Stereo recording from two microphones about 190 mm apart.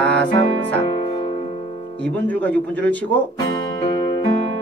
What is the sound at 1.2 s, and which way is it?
Music, 35° left (ahead or behind).